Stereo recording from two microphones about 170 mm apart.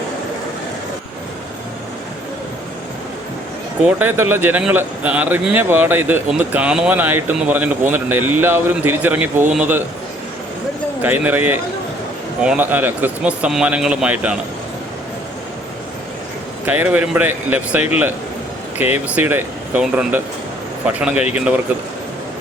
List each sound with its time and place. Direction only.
3.8 s a man's voice: 10° right (ahead or behind)
11.0 s a man's voice: 10° right (ahead or behind)
16.6 s a man's voice: 10° right (ahead or behind)